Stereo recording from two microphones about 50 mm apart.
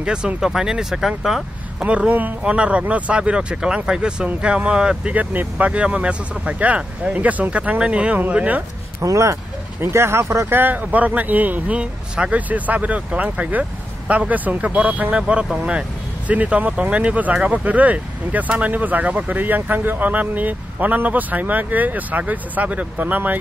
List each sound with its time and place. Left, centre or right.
0.0 s speech: centre
1.8 s speech: right
5.1 s speech: right
9.0 s speech: right
9.8 s speech: right
10.5 s speech: right
11.6 s speech: right
16.3 s speech: right